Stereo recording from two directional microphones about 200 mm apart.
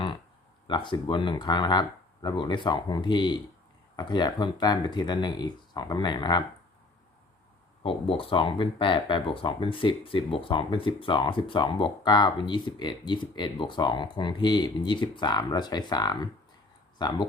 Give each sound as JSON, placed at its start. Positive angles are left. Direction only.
{"t": 0.7, "sound": "speech", "side_deg": 25}
{"t": 7.9, "sound": "speech", "side_deg": 25}